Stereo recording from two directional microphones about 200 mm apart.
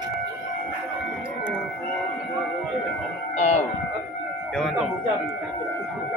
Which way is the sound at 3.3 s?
35° left (ahead or behind).